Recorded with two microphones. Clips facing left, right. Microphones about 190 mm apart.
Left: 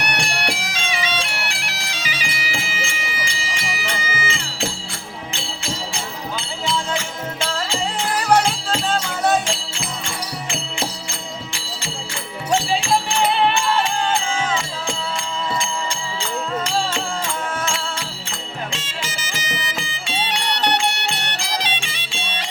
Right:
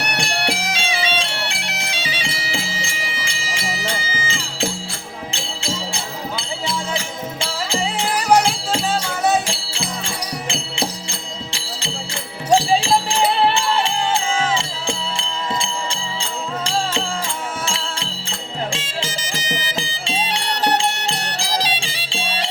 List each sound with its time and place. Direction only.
0.2 s music: 30° right (ahead or behind)
1.4 s bagpipes: 25° right (ahead or behind)
3.5 s music: 30° right (ahead or behind)
8.3 s music: 10° right (ahead or behind)
12.5 s music: 30° right (ahead or behind)
18.7 s music: 30° right (ahead or behind)